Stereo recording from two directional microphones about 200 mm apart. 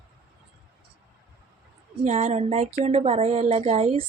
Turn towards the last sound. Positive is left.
turn(degrees=-30)  # may be behind; listen again after turning